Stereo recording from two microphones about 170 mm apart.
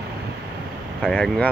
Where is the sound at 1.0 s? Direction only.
5° left (ahead or behind).